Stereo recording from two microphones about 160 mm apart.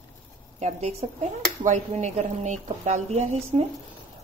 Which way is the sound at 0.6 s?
45° right (ahead or behind).